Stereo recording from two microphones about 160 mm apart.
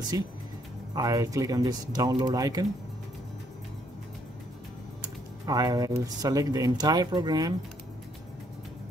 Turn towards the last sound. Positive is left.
turn(degrees=-25)  # may be behind; listen again after turning